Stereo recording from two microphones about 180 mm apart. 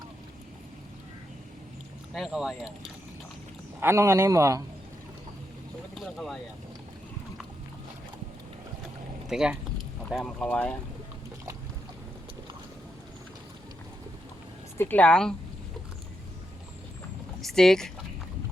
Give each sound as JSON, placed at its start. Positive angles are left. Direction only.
{"t": 2.1, "sound": "speech", "side_deg": 0}
{"t": 3.8, "sound": "a man's voice", "side_deg": -15}
{"t": 5.9, "sound": "speech", "side_deg": 0}
{"t": 9.3, "sound": "speech", "side_deg": -5}
{"t": 14.8, "sound": "speech", "side_deg": 10}
{"t": 17.4, "sound": "speech", "side_deg": 0}